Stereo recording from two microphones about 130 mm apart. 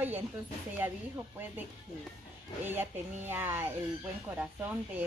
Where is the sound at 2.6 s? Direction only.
15° right (ahead or behind).